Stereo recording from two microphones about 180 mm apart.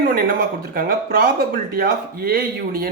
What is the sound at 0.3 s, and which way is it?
Speech, 55° right (ahead or behind).